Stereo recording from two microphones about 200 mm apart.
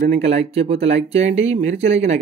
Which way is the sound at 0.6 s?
30° right (ahead or behind).